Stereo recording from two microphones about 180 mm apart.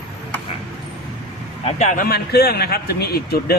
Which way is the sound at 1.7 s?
40° left (ahead or behind).